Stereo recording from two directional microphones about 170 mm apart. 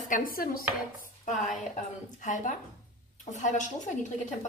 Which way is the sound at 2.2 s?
50° left (ahead or behind).